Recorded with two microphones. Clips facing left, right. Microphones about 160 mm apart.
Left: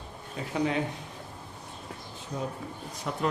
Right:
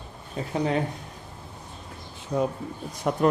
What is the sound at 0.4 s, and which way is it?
Speech, 35° right (ahead or behind).